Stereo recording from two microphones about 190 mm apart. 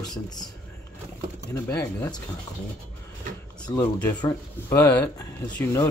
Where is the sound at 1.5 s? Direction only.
15° left (ahead or behind).